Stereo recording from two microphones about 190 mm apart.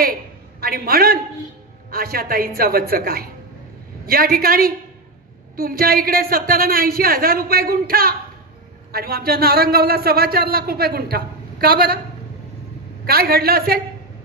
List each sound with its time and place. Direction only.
0.6 s a man's voice: 50° right (ahead or behind)
13.0 s a man's voice: 50° right (ahead or behind)